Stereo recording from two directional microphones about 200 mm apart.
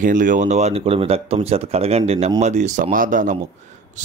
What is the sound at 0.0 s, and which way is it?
Speech, 40° right (ahead or behind).